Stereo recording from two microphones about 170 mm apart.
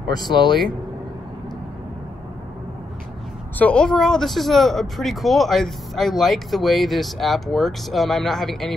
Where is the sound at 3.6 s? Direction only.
5° left (ahead or behind).